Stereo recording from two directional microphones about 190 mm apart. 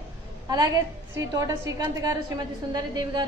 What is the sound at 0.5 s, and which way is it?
A woman's voice, 20° right (ahead or behind).